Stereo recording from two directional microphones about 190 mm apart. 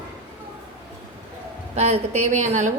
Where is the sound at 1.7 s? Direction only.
35° right (ahead or behind).